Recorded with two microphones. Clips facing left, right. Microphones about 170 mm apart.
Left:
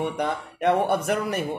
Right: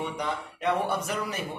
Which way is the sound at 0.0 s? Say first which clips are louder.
Left 5 dB; 55° left (ahead or behind).